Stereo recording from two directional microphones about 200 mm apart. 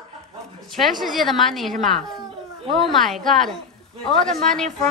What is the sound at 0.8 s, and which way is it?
A woman's voice, centre (ahead or behind).